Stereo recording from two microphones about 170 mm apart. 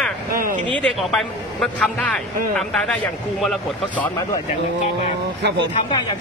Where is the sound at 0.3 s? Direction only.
55° right (ahead or behind).